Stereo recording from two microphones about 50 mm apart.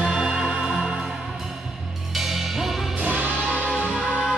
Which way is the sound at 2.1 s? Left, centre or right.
Centre.